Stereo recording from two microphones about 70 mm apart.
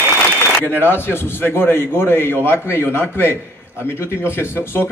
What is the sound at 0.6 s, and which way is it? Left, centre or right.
A man's voice, left.